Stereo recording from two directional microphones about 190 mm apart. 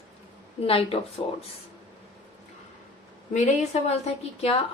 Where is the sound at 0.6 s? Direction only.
30° left (ahead or behind).